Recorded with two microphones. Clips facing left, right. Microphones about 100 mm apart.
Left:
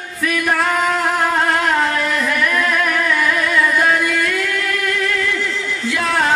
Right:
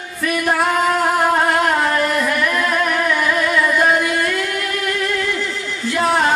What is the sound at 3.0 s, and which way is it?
Music, 20° right (ahead or behind).